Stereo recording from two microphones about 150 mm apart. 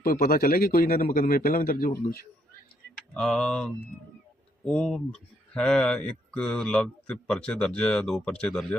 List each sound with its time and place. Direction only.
0.0 s speech: 75° left (ahead or behind)
3.2 s a man's voice: 5° left (ahead or behind)
4.7 s a man's voice: 5° left (ahead or behind)